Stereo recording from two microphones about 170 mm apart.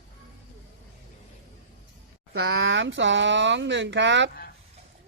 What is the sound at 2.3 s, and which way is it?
Speech, 90° right.